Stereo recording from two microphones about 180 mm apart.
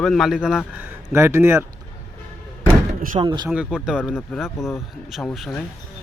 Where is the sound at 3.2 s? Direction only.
20° right (ahead or behind).